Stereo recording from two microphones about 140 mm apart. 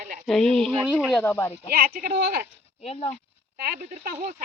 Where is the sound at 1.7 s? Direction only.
90° right.